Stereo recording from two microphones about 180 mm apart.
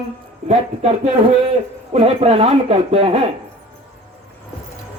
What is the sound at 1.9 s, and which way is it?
A man's voice, 35° right (ahead or behind).